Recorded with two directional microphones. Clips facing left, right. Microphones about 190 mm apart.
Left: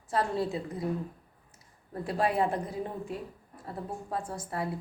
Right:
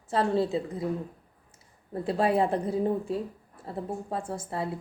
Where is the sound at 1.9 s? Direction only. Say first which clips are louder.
Right 4 dB; 25° right (ahead or behind).